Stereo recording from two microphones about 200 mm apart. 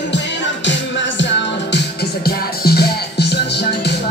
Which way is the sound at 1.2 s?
60° left (ahead or behind).